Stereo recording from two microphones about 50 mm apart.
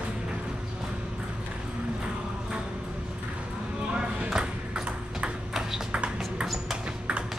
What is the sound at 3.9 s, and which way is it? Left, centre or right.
Ping, centre.